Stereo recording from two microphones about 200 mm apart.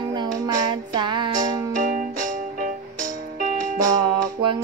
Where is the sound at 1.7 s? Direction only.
40° right (ahead or behind).